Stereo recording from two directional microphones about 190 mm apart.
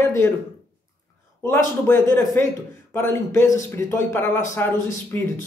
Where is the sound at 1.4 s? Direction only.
15° left (ahead or behind).